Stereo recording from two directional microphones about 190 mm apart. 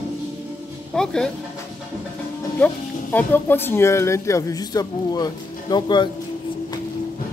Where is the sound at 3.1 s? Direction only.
10° left (ahead or behind).